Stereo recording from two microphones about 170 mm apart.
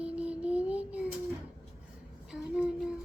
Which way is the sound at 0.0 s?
5° right (ahead or behind).